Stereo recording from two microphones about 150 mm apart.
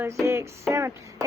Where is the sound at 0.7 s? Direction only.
20° right (ahead or behind).